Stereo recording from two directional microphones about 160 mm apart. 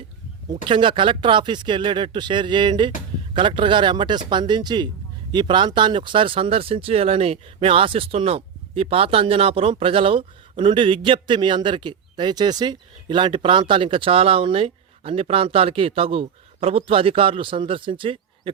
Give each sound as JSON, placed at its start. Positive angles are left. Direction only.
{"t": 0.5, "sound": "speech", "side_deg": -30}